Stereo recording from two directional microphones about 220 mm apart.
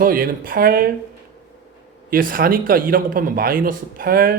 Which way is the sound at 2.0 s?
40° right (ahead or behind).